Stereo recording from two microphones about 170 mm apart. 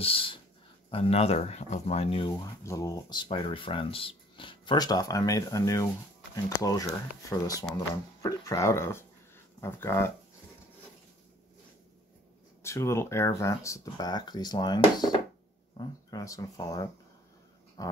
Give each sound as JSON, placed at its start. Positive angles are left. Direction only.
{"t": 0.0, "sound": "a sound", "side_deg": 30}
{"t": 0.8, "sound": "speech", "side_deg": 35}
{"t": 12.6, "sound": "speech", "side_deg": 15}